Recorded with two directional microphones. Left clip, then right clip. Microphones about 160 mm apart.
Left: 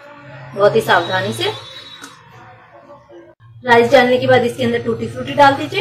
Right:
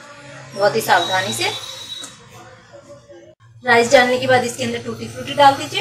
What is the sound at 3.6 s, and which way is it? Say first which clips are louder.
A woman's voice: left 2 dB; 5° left (ahead or behind).